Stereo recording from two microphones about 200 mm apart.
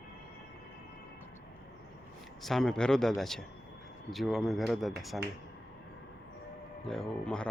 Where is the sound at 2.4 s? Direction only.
Centre (ahead or behind).